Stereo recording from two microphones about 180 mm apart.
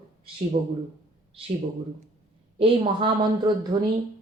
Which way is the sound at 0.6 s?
55° right (ahead or behind).